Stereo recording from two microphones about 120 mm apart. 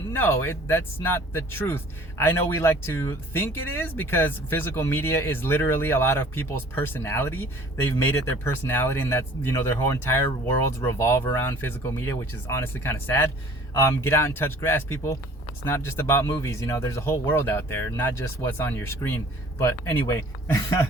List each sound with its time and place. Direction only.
0.1 s speech: 20° left (ahead or behind)